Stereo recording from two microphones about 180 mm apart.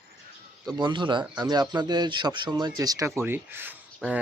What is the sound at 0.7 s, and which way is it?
A man's voice, 25° right (ahead or behind).